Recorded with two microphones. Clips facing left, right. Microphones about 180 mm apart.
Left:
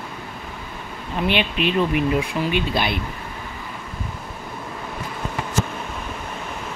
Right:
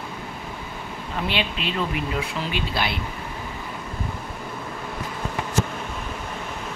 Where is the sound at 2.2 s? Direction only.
20° left (ahead or behind).